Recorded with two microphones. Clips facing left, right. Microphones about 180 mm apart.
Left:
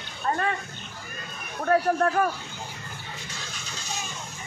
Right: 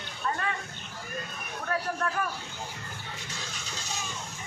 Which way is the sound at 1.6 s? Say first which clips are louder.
Left 9 dB; 45° left (ahead or behind).